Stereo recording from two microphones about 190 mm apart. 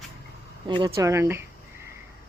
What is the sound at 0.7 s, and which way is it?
Speech, 20° right (ahead or behind).